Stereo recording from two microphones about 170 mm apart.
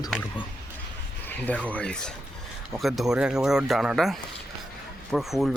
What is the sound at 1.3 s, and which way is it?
Speech, 10° left (ahead or behind).